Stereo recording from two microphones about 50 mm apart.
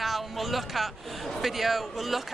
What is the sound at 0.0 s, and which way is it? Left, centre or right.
A man's voice, centre.